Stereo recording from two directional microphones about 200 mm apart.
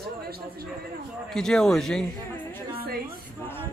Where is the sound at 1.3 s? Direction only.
5° left (ahead or behind).